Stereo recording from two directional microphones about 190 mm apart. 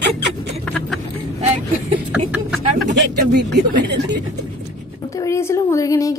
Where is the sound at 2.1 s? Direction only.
5° right (ahead or behind).